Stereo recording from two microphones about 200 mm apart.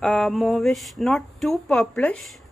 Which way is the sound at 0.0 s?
5° left (ahead or behind).